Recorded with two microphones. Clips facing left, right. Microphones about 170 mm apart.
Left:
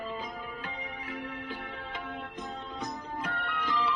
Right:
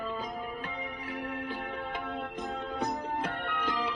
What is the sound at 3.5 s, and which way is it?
Music, 50° right (ahead or behind).